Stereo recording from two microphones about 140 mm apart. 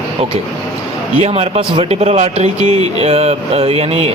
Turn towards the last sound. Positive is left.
turn(degrees=-45)  # may be behind; listen again after turning